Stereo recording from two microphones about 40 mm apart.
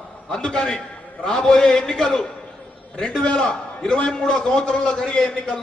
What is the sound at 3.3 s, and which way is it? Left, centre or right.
A man's voice, centre.